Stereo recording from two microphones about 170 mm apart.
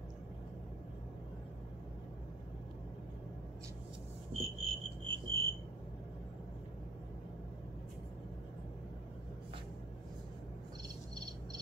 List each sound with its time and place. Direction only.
4.3 s cricket: 35° right (ahead or behind)